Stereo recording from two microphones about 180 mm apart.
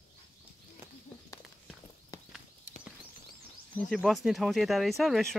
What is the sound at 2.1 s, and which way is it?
Horse, 20° left (ahead or behind).